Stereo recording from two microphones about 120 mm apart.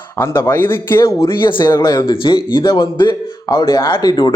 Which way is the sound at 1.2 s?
45° left (ahead or behind).